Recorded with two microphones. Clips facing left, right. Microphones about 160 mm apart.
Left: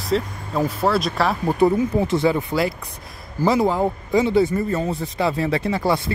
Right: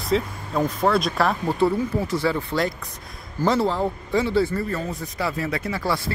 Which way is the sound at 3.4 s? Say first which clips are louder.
Left 3 dB; 15° left (ahead or behind).